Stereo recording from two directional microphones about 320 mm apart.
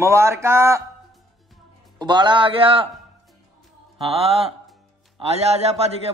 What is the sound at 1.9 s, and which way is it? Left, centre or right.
Speech, centre.